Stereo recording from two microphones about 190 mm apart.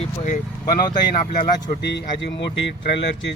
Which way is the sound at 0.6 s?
20° left (ahead or behind).